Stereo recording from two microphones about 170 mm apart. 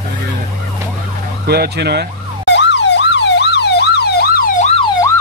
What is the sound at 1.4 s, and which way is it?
Speech, 70° right (ahead or behind).